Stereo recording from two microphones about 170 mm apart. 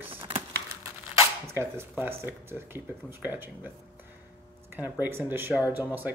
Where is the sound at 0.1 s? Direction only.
30° right (ahead or behind).